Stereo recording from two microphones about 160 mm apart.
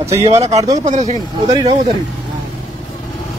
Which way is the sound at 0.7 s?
45° right (ahead or behind).